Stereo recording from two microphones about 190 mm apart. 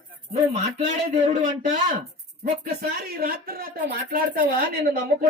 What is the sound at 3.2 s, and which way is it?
Speech, 50° right (ahead or behind).